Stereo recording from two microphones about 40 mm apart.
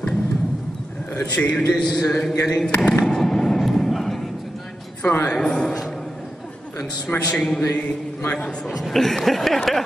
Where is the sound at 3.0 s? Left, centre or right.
Centre.